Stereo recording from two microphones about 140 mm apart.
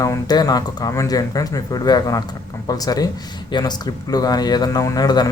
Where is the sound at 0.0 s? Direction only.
25° left (ahead or behind).